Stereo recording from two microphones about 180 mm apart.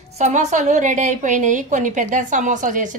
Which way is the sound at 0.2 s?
40° right (ahead or behind).